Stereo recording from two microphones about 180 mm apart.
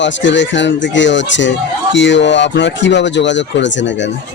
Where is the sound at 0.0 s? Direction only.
90° left.